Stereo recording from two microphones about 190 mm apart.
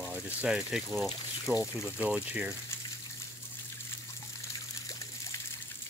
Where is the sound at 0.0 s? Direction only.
5° right (ahead or behind).